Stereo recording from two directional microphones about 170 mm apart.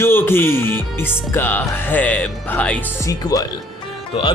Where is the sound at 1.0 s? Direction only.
10° left (ahead or behind).